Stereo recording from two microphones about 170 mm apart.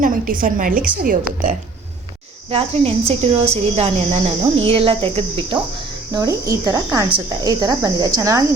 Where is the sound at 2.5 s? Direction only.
35° right (ahead or behind).